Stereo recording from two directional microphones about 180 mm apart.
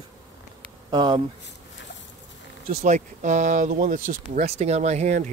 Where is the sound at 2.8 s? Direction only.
45° right (ahead or behind).